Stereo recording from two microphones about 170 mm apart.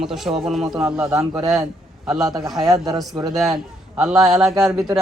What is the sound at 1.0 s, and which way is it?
Speech, 20° right (ahead or behind).